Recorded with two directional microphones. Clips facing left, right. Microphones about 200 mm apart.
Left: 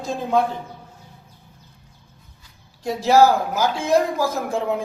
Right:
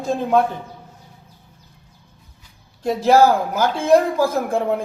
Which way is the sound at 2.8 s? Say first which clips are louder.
Right 1 dB; 55° right (ahead or behind).